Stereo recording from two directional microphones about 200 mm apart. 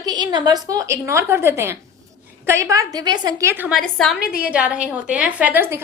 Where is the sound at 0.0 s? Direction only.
20° right (ahead or behind).